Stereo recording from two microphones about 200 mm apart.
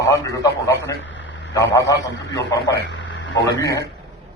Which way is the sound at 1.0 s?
65° left (ahead or behind).